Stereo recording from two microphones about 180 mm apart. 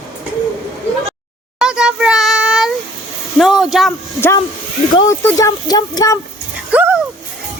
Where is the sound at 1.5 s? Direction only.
5° right (ahead or behind).